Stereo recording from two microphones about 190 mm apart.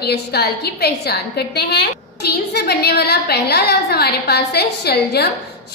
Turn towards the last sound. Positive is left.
turn(degrees=60)  # may be behind; listen again after turning